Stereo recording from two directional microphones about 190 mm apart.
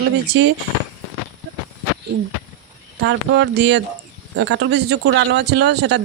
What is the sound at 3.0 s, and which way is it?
Speech, 65° right (ahead or behind).